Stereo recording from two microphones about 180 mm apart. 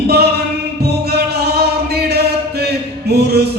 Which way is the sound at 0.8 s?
65° right (ahead or behind).